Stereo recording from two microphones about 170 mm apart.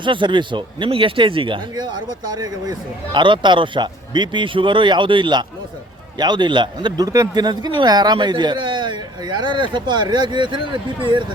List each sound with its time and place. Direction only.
0.0 s a man's voice: 30° right (ahead or behind)